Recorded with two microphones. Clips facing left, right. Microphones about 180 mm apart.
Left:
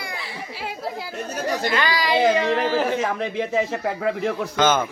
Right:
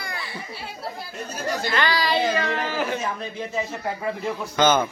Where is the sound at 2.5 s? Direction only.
80° left.